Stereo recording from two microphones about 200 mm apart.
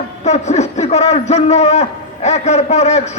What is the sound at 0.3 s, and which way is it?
A man's voice, 35° left (ahead or behind).